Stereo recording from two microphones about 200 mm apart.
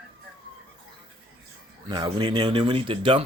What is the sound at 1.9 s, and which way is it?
Speech, 20° right (ahead or behind).